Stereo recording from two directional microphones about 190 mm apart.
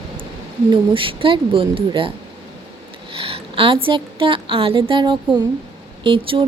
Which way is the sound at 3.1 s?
30° right (ahead or behind).